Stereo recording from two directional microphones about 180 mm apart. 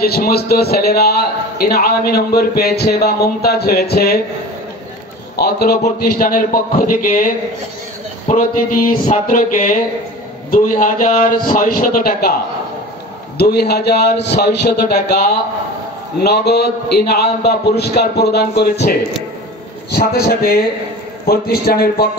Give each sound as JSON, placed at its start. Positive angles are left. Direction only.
{"t": 0.0, "sound": "a man's voice", "side_deg": 60}
{"t": 5.3, "sound": "a man's voice", "side_deg": 60}
{"t": 13.4, "sound": "a man's voice", "side_deg": 65}